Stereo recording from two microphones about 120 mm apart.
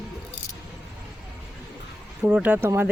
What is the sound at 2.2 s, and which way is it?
Speech, 10° right (ahead or behind).